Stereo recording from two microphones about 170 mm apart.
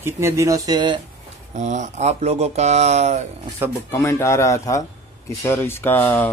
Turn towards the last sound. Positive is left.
turn(degrees=10)  # may be behind; listen again after turning